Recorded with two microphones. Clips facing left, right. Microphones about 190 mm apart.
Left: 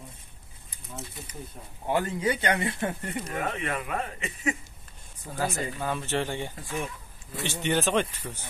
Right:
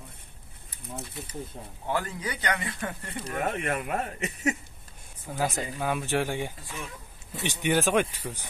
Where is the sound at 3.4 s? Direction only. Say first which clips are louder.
Right 2 dB; 50° right (ahead or behind).